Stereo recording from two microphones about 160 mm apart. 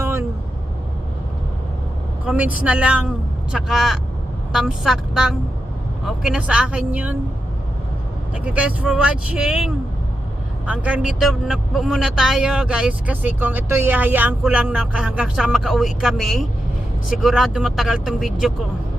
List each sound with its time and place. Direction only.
0.0 s vehicle: 20° right (ahead or behind)
2.2 s speech: 10° right (ahead or behind)
8.4 s speech: 10° right (ahead or behind)